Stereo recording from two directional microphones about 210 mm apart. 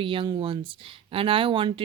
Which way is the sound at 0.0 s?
25° right (ahead or behind).